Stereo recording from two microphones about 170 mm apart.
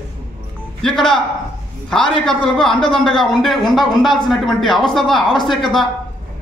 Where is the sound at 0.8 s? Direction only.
5° left (ahead or behind).